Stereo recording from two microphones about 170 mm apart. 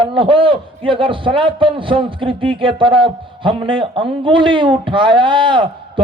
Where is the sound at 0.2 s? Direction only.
30° right (ahead or behind).